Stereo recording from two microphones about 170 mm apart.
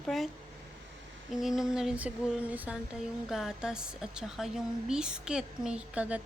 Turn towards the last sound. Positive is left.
turn(degrees=-5)  # may be behind; listen again after turning